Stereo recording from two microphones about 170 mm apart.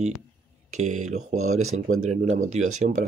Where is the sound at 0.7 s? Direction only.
45° right (ahead or behind).